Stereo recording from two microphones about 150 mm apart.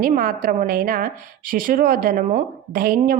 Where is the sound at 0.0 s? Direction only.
70° right (ahead or behind).